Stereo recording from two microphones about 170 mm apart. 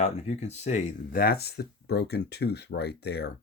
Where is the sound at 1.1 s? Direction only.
65° left (ahead or behind).